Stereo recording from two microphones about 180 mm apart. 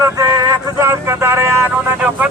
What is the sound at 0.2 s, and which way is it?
Speech, 20° right (ahead or behind).